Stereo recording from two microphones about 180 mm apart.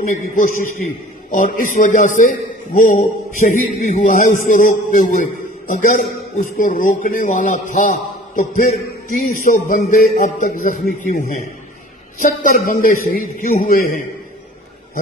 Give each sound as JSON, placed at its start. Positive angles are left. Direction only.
{"t": 0.1, "sound": "a man's voice", "side_deg": 45}